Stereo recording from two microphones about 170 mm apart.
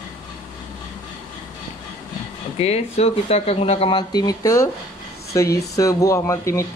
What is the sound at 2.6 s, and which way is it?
Speech, 35° left (ahead or behind).